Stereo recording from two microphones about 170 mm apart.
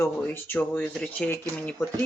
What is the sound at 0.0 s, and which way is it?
Speech, 15° left (ahead or behind).